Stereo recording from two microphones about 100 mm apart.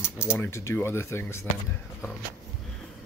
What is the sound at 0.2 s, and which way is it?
Speech, 25° left (ahead or behind).